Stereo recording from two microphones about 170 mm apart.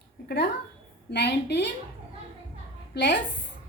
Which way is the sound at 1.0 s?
80° left.